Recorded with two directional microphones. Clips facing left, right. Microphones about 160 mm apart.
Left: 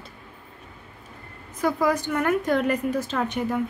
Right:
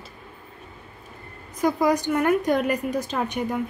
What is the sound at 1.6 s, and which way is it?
Speech, 15° right (ahead or behind).